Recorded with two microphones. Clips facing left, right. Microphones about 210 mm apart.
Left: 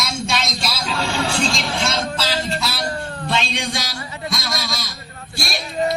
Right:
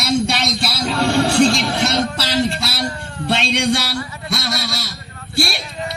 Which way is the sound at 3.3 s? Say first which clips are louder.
Right 6 dB; 65° right (ahead or behind).